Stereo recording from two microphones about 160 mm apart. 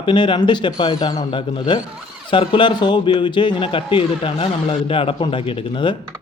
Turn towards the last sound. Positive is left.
turn(degrees=35)  # may be behind; listen again after turning